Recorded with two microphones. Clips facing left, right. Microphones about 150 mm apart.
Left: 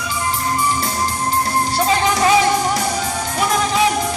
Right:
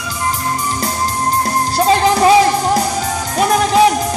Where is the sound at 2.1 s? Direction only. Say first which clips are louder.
Right 4 dB; 35° right (ahead or behind).